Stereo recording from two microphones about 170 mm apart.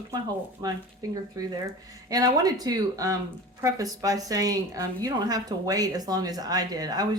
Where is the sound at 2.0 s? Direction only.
20° right (ahead or behind).